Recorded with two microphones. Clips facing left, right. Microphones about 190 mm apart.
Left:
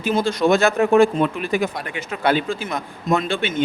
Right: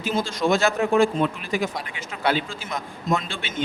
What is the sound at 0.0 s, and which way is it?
A man's voice, 55° left (ahead or behind).